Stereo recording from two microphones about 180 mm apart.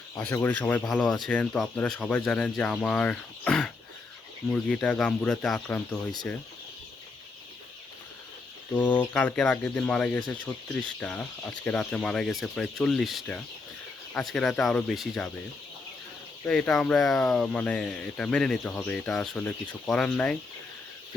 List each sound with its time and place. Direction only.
0.2 s speech: 10° left (ahead or behind)
8.7 s speech: 10° left (ahead or behind)
16.4 s speech: 5° left (ahead or behind)